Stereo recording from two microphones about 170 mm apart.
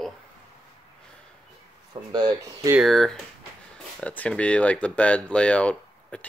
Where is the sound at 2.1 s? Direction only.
25° right (ahead or behind).